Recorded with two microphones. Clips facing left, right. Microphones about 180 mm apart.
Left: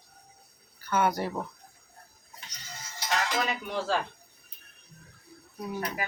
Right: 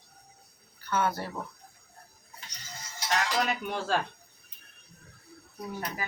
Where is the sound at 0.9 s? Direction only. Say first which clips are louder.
Left 3 dB; 15° left (ahead or behind).